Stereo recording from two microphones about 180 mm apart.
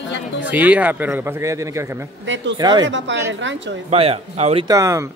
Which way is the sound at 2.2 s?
90° right.